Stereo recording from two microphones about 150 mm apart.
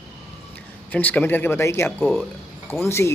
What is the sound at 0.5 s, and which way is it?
A man's voice, 10° left (ahead or behind).